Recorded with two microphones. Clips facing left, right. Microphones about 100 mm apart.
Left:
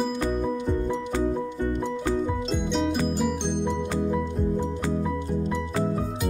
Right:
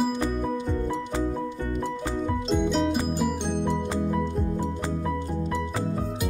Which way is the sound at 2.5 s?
Centre (ahead or behind).